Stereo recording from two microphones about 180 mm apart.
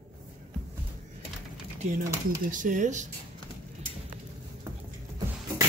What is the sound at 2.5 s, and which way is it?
Speech, 45° right (ahead or behind).